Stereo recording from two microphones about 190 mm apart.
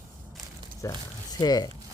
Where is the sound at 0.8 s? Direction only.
15° left (ahead or behind).